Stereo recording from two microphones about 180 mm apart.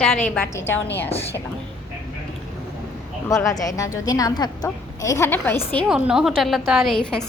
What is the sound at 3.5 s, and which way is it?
A woman's voice, 20° left (ahead or behind).